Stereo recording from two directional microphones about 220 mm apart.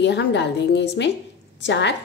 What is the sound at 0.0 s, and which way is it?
A woman's voice, 50° left (ahead or behind).